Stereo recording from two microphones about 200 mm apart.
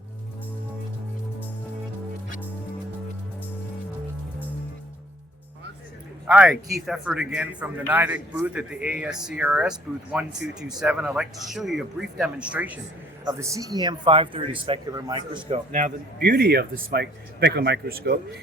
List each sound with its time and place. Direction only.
6.2 s a man's voice: 5° right (ahead or behind)
15.4 s speech: 35° right (ahead or behind); by 18.2 s 55° right (ahead or behind)